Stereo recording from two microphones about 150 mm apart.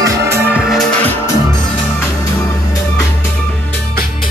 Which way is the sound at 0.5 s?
Centre (ahead or behind).